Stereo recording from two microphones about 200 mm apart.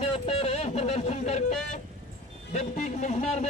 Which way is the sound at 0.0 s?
30° left (ahead or behind).